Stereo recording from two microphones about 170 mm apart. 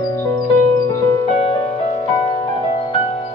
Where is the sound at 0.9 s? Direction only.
25° left (ahead or behind).